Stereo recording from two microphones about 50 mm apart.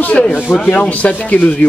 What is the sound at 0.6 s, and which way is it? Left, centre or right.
Speech, left.